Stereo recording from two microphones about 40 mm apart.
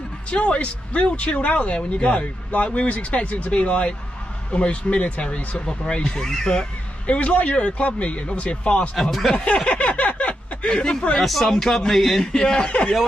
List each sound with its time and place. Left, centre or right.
0.3 s speech: left
5.7 s speech: left
7.1 s speech: left
8.9 s a man's voice: centre
9.3 s speech: left
9.7 s speech: left
11.2 s a man's voice: centre
12.2 s speech: centre